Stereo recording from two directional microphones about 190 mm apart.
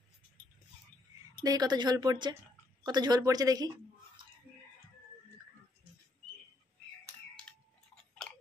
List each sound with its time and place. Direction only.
1.4 s speech: 20° right (ahead or behind)
7.4 s tick-tock: 5° left (ahead or behind)